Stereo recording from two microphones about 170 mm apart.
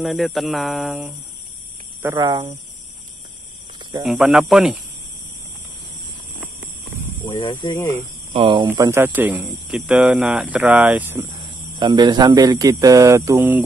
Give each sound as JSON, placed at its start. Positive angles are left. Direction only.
{"t": 0.0, "sound": "speech", "side_deg": 0}
{"t": 2.0, "sound": "speech", "side_deg": -20}
{"t": 4.0, "sound": "speech", "side_deg": 0}
{"t": 7.2, "sound": "speech", "side_deg": 20}
{"t": 8.3, "sound": "speech", "side_deg": -30}
{"t": 8.6, "sound": "speech", "side_deg": -15}
{"t": 11.8, "sound": "speech", "side_deg": -25}